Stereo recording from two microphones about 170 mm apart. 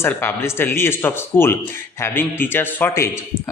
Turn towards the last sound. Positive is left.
turn(degrees=15)  # may be behind; listen again after turning